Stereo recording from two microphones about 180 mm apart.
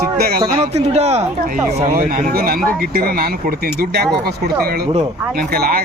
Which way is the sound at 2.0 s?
50° right (ahead or behind).